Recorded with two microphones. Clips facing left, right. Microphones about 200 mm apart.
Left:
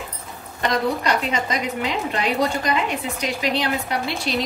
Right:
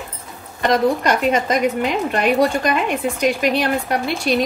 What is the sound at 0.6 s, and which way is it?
A woman's voice, 50° right (ahead or behind).